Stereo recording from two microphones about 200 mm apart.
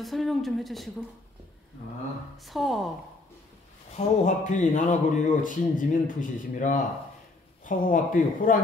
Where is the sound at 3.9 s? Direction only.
35° left (ahead or behind).